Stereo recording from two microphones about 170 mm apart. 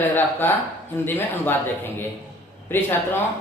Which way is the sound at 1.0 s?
15° left (ahead or behind).